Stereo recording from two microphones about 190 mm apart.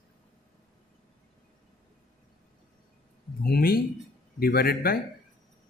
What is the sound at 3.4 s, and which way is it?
Speech, 55° left (ahead or behind).